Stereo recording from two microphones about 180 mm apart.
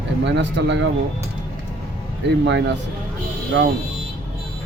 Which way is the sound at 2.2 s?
75° right (ahead or behind).